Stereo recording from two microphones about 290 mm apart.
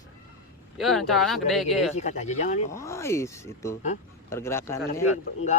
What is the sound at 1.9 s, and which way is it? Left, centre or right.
Speech, left.